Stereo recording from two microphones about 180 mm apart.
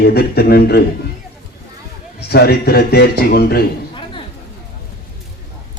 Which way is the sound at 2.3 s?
60° left (ahead or behind).